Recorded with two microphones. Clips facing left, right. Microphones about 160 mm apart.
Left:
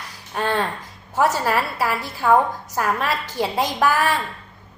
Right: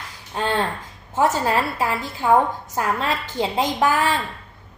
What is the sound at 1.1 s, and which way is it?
A woman's voice, 20° right (ahead or behind).